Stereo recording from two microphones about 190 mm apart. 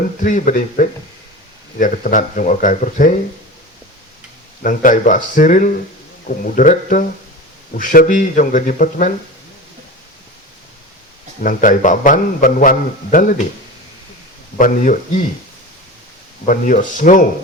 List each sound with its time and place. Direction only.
0.2 s a man's voice: 40° left (ahead or behind)
4.6 s a man's voice: 45° left (ahead or behind)
11.4 s a man's voice: 45° left (ahead or behind)
14.6 s a man's voice: 45° left (ahead or behind)
16.5 s a man's voice: 45° left (ahead or behind)